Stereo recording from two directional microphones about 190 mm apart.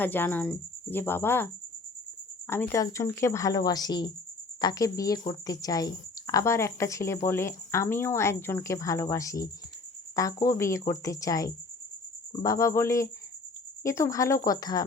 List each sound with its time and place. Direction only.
0.0 s speech: 10° left (ahead or behind)
2.5 s speech: 10° left (ahead or behind)